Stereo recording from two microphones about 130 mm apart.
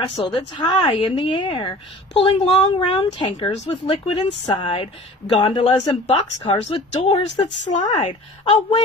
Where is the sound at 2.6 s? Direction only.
35° left (ahead or behind).